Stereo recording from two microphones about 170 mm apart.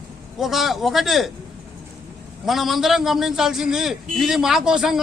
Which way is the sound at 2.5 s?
Centre (ahead or behind).